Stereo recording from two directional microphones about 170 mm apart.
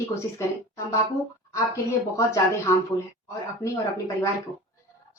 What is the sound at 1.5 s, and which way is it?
A child's voice, 20° left (ahead or behind).